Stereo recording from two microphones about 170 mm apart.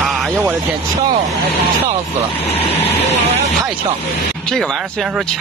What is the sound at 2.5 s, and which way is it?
Speech, 35° left (ahead or behind).